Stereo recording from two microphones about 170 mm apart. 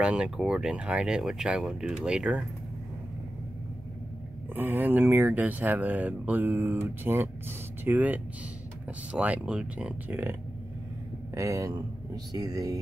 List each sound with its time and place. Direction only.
0.0 s speech: 5° right (ahead or behind)
4.6 s speech: 10° right (ahead or behind)
11.3 s speech: 20° right (ahead or behind)